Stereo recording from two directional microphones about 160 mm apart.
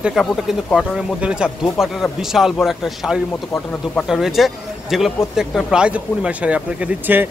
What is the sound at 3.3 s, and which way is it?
Speech, 10° left (ahead or behind).